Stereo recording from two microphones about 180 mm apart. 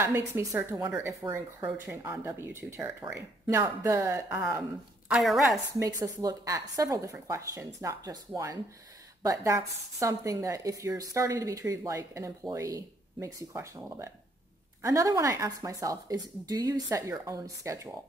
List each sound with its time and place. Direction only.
0.3 s speech: 15° right (ahead or behind)
5.8 s speech: 20° right (ahead or behind)
9.2 s speech: 15° right (ahead or behind)